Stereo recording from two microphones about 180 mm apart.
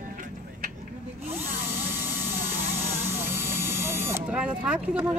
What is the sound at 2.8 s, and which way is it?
Vehicle, 35° right (ahead or behind).